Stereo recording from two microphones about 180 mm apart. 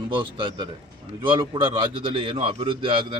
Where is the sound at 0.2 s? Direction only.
25° right (ahead or behind).